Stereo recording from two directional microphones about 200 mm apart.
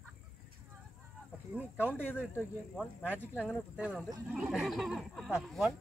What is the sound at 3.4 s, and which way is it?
Speech, 5° right (ahead or behind).